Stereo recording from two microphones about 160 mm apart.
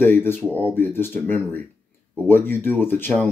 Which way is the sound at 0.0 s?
10° left (ahead or behind).